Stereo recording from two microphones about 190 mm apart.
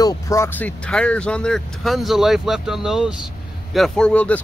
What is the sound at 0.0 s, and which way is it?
Speech, 20° left (ahead or behind).